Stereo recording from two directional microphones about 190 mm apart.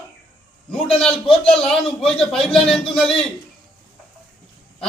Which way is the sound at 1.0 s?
Centre (ahead or behind).